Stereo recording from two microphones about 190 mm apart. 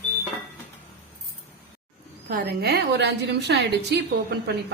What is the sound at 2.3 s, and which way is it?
A woman's voice, 55° right (ahead or behind).